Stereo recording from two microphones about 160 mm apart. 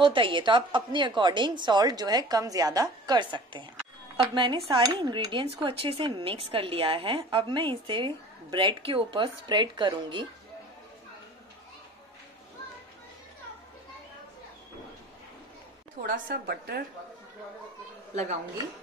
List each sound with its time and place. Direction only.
0.0 s a woman's voice: 30° right (ahead or behind)
4.2 s cutlery: 30° right (ahead or behind)
16.0 s a woman's voice: 70° right (ahead or behind)